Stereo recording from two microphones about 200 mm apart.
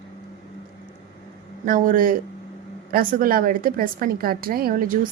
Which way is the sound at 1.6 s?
45° right (ahead or behind).